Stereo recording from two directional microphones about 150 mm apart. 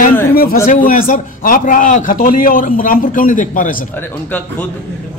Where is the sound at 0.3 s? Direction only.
85° left.